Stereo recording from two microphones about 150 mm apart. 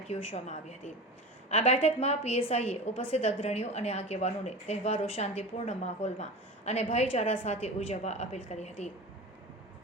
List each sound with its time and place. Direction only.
0.1 s a woman's voice: 45° left (ahead or behind)